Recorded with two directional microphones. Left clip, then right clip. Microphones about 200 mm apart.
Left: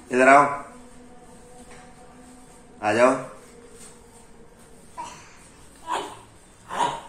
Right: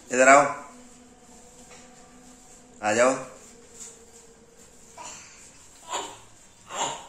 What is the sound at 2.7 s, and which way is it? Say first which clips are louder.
Speech: left 3 dB; 15° right (ahead or behind).